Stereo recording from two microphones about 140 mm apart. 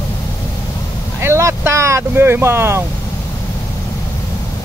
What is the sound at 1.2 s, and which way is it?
Speech, 20° right (ahead or behind).